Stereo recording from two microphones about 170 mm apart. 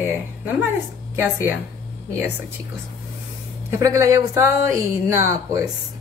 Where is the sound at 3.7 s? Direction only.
20° right (ahead or behind).